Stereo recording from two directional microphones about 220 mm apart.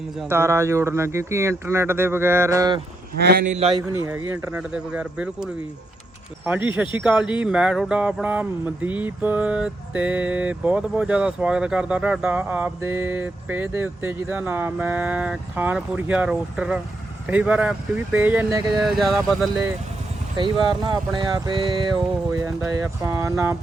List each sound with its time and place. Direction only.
0.2 s speech: 10° right (ahead or behind)
3.2 s speech: 45° right (ahead or behind)
3.5 s speech: 25° right (ahead or behind)
4.3 s speech: 5° right (ahead or behind)
20.8 s speech: 20° right (ahead or behind)
23.0 s speech: 10° right (ahead or behind)